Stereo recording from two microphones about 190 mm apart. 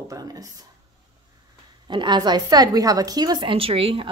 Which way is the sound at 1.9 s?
25° right (ahead or behind).